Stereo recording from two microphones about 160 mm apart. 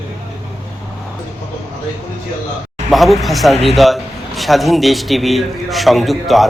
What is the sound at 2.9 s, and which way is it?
A man's voice, centre (ahead or behind).